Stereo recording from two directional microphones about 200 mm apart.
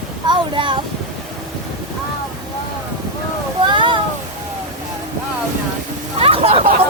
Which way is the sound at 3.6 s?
25° right (ahead or behind).